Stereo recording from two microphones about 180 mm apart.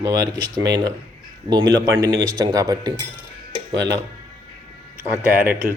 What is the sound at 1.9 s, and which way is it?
Speech, 20° right (ahead or behind).